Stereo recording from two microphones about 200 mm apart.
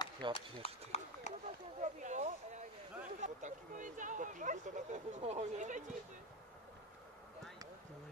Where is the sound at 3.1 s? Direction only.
35° right (ahead or behind).